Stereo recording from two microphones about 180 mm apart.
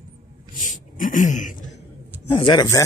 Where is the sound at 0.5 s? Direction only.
45° left (ahead or behind).